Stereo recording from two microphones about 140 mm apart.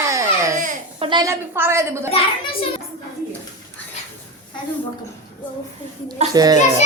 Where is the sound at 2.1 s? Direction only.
40° left (ahead or behind).